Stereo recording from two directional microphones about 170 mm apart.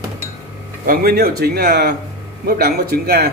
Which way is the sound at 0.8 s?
60° right (ahead or behind).